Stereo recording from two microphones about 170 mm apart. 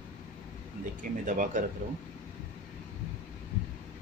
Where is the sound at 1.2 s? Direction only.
50° right (ahead or behind).